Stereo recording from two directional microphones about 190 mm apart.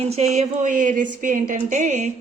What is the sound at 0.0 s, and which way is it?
A woman's voice, 35° right (ahead or behind).